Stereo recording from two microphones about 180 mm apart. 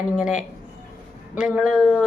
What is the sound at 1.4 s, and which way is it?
Speech, 5° right (ahead or behind).